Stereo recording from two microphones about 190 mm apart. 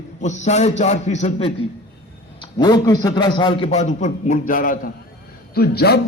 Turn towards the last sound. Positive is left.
turn(degrees=55)  # may be behind; listen again after turning